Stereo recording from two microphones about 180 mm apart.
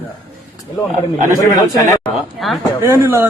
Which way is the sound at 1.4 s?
20° left (ahead or behind).